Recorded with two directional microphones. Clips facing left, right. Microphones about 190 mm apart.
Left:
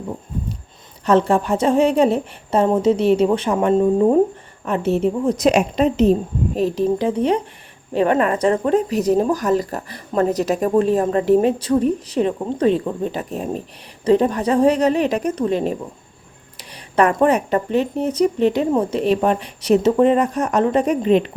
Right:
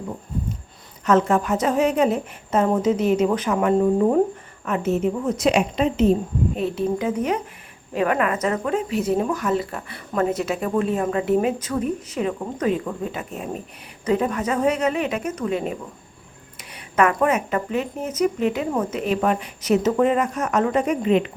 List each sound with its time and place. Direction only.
1.0 s speech: 30° left (ahead or behind)
4.6 s speech: 35° left (ahead or behind)